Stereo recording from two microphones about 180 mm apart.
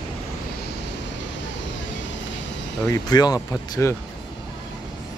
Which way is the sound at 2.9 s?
20° left (ahead or behind).